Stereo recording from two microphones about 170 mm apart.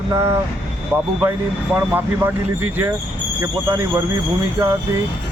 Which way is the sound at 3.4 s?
15° right (ahead or behind).